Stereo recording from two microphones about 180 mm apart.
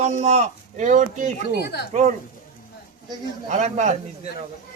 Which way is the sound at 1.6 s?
65° left (ahead or behind).